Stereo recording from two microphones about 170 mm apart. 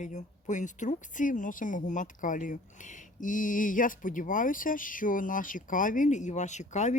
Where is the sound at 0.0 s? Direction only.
45° left (ahead or behind).